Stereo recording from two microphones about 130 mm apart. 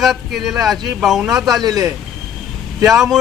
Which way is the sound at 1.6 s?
30° right (ahead or behind).